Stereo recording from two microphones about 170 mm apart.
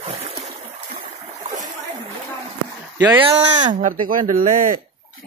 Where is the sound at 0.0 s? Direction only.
35° right (ahead or behind).